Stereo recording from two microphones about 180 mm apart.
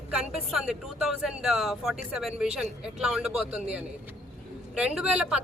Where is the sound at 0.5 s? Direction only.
5° right (ahead or behind).